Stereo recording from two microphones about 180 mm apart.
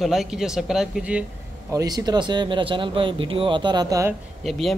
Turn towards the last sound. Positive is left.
turn(degrees=0)  # may be behind; listen again after turning